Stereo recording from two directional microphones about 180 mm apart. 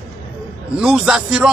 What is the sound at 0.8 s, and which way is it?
Speech, 5° right (ahead or behind).